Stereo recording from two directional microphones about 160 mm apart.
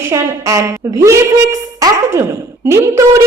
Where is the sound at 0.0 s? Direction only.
15° right (ahead or behind).